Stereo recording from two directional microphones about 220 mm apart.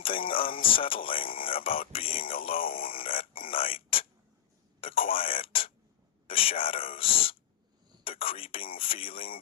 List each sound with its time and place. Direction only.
0.0 s speech: 25° left (ahead or behind)
4.8 s a sound: 25° left (ahead or behind)
6.2 s speech: 25° left (ahead or behind)